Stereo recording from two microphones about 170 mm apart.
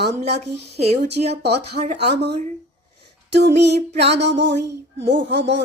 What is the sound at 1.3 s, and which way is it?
Speech, 75° right (ahead or behind).